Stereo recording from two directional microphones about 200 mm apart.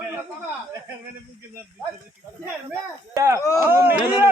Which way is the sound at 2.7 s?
15° right (ahead or behind).